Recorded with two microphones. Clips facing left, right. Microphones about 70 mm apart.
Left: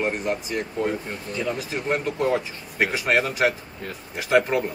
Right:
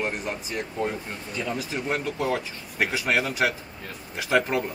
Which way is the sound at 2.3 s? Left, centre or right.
Left.